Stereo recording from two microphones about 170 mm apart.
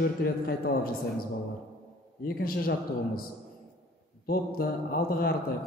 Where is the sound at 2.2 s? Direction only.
60° left (ahead or behind).